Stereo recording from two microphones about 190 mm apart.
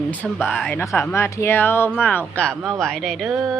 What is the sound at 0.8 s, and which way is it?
A woman's voice, 15° left (ahead or behind).